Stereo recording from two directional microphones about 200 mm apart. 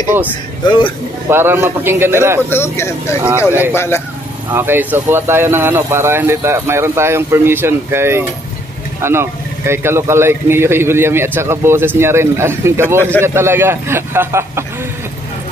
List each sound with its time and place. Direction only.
0.7 s speech: 25° left (ahead or behind)
1.3 s speech: 10° right (ahead or behind)
2.5 s speech: 10° left (ahead or behind)
4.5 s speech: 10° right (ahead or behind)